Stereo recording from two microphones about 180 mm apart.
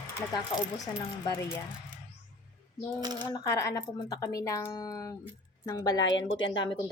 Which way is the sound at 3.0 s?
20° right (ahead or behind).